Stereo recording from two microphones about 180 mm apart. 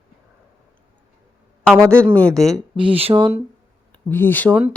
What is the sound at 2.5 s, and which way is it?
Speech, 30° right (ahead or behind).